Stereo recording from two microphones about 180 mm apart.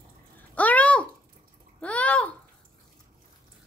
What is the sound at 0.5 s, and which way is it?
Babbling, 10° left (ahead or behind).